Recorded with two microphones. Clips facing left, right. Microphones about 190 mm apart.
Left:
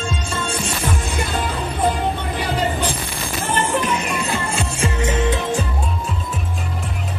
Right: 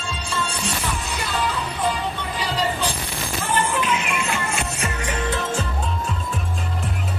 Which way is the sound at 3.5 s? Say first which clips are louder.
Left 2 dB; 45° left (ahead or behind).